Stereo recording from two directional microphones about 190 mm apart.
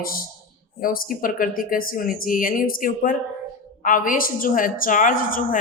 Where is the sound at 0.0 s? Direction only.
50° left (ahead or behind).